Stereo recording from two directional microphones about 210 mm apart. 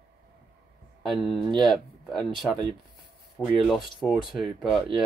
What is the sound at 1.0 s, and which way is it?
Speech, centre (ahead or behind).